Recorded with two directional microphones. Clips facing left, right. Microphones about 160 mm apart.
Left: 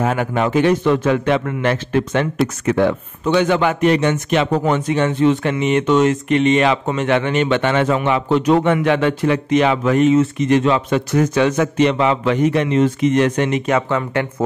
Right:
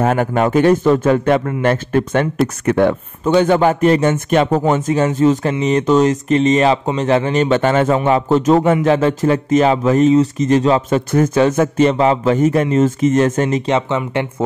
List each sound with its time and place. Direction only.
0.0 s a man's voice: 45° right (ahead or behind)
11.1 s a man's voice: 50° right (ahead or behind)
13.7 s speech: 20° right (ahead or behind)